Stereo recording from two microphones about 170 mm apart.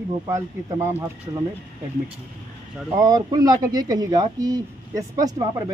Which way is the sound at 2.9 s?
20° right (ahead or behind).